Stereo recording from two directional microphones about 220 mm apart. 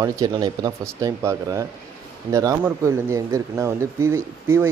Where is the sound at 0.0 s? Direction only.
15° right (ahead or behind).